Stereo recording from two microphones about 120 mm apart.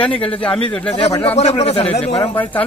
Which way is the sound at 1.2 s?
55° left (ahead or behind).